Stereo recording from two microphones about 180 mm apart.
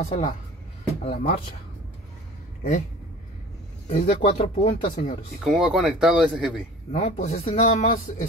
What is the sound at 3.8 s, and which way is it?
Speech, 40° left (ahead or behind).